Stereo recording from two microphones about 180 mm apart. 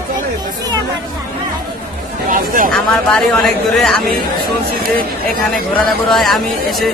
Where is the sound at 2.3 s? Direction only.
50° right (ahead or behind).